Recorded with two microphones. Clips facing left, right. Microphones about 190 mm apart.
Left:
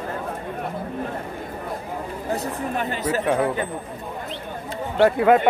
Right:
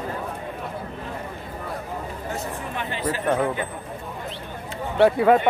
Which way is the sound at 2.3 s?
40° left (ahead or behind).